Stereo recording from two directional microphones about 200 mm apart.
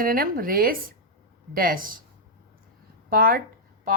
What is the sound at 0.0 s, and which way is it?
Speech, 45° right (ahead or behind).